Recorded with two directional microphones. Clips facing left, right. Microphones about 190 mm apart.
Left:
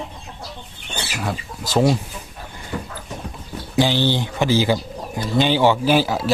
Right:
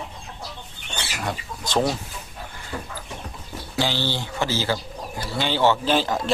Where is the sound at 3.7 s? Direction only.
15° left (ahead or behind).